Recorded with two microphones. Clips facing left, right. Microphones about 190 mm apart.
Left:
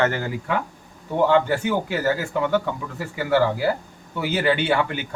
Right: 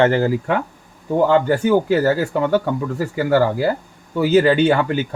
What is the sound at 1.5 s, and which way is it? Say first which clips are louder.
Speech: right 7 dB; 40° right (ahead or behind).